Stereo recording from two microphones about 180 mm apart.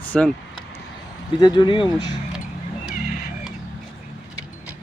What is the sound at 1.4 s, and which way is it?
Speech, 25° left (ahead or behind).